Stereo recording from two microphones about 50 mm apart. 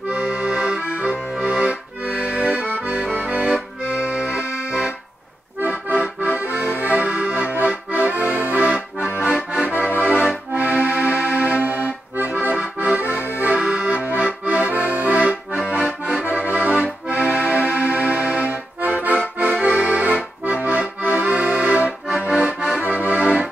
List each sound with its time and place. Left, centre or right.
0.1 s accordion: centre
6.3 s accordion: right; by 9.7 s centre
9.7 s accordion: left
10.0 s accordion: right
13.1 s accordion: left
13.4 s accordion: right
18.8 s accordion: right